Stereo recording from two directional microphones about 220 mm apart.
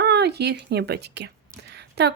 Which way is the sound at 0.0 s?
50° right (ahead or behind).